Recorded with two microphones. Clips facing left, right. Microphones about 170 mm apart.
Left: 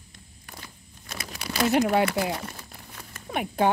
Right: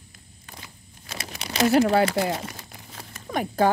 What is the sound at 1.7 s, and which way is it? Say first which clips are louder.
Speech: right 3 dB; 35° right (ahead or behind).